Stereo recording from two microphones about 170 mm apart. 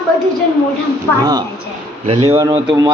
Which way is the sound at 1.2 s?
25° right (ahead or behind).